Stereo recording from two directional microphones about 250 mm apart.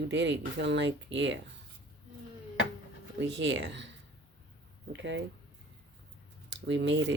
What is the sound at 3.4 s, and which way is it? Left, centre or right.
Speech, right.